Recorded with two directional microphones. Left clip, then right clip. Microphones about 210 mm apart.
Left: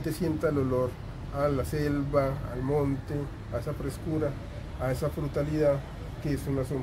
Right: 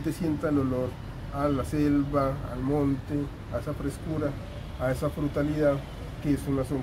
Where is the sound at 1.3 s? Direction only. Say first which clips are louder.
Right 1 dB; 25° left (ahead or behind).